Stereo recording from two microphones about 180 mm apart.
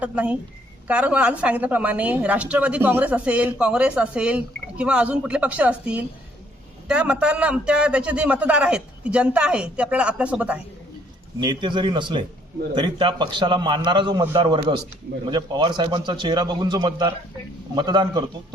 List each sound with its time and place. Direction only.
0.0 s a woman's voice: 5° right (ahead or behind)
11.3 s a man's voice: 25° right (ahead or behind)